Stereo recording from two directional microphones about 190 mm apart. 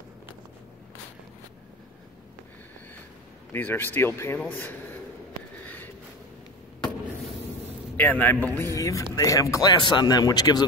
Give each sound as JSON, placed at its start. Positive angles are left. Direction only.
{"t": 3.5, "sound": "speech", "side_deg": 10}
{"t": 8.0, "sound": "speech", "side_deg": 10}
{"t": 8.5, "sound": "speech", "side_deg": -15}
{"t": 8.7, "sound": "speech", "side_deg": 15}